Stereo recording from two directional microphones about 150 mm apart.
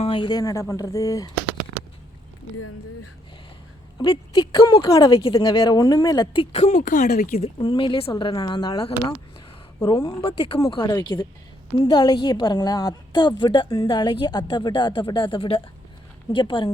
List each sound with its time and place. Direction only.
0.0 s speech: 35° left (ahead or behind)
4.0 s a woman's voice: 35° left (ahead or behind); by 7.3 s 75° left (ahead or behind)
7.6 s a woman's voice: 30° left (ahead or behind)
8.1 s a woman's voice: 25° left (ahead or behind)